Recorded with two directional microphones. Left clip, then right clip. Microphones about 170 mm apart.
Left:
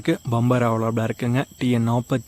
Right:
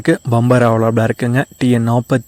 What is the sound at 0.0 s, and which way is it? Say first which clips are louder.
Speech: right 8 dB; 35° right (ahead or behind).